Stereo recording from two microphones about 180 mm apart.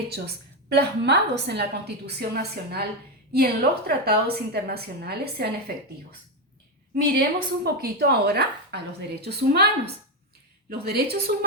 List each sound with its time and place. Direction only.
0.7 s a woman's voice: 70° right (ahead or behind)